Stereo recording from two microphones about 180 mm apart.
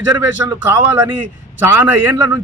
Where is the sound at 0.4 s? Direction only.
15° right (ahead or behind).